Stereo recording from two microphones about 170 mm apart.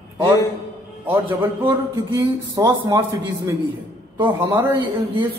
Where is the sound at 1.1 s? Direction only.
10° right (ahead or behind).